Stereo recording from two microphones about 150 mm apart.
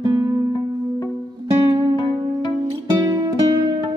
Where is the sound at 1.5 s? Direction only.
30° right (ahead or behind).